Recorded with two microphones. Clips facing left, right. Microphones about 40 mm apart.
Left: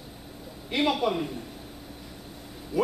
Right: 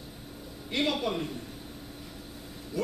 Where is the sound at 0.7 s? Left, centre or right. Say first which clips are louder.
Left 4 dB; centre.